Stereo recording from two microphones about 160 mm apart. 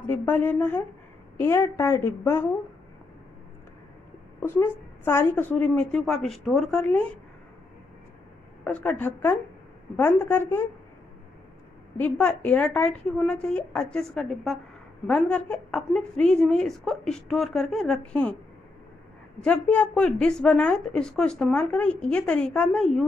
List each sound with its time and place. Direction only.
0.1 s a woman's voice: 15° left (ahead or behind)
4.4 s a woman's voice: 15° left (ahead or behind)
8.6 s a woman's voice: 10° left (ahead or behind)
12.0 s a woman's voice: 10° left (ahead or behind)
19.4 s a woman's voice: 10° left (ahead or behind)